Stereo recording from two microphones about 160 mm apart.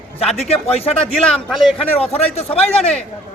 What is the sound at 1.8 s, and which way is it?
A man's voice, 40° left (ahead or behind).